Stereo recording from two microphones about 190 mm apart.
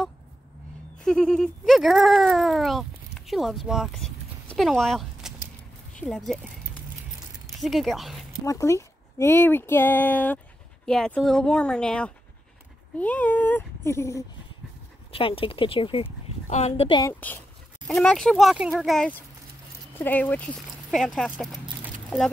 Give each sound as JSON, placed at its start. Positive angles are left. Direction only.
{"t": 1.0, "sound": "speech", "side_deg": 5}
{"t": 7.6, "sound": "speech", "side_deg": 0}
{"t": 8.5, "sound": "speech", "side_deg": 15}
{"t": 15.1, "sound": "a woman's voice", "side_deg": 30}
{"t": 17.0, "sound": "speech", "side_deg": 10}